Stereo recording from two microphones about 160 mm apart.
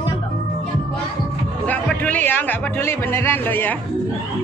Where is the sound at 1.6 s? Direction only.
10° left (ahead or behind).